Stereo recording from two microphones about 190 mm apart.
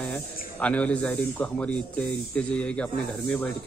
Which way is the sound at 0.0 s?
5° left (ahead or behind).